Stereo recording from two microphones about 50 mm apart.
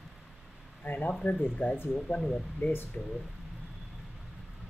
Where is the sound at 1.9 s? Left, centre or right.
Left.